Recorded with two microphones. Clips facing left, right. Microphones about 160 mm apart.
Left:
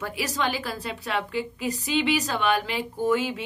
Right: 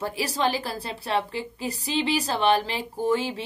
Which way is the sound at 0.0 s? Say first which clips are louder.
Right 2 dB; 30° right (ahead or behind).